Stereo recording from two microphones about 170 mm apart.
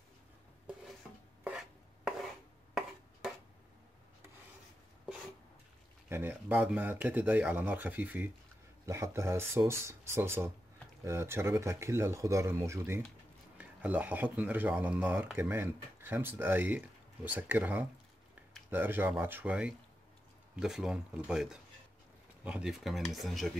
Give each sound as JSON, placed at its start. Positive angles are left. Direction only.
{"t": 1.4, "sound": "chopping", "side_deg": -5}
{"t": 6.0, "sound": "speech", "side_deg": -10}